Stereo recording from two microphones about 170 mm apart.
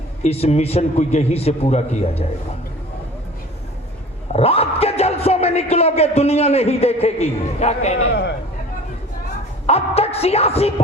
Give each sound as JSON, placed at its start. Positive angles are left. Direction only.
{"t": 0.2, "sound": "a man's voice", "side_deg": 35}
{"t": 4.3, "sound": "speech", "side_deg": 35}
{"t": 9.6, "sound": "a man's voice", "side_deg": 35}